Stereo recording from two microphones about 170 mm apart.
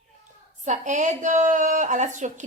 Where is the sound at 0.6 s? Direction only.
45° right (ahead or behind).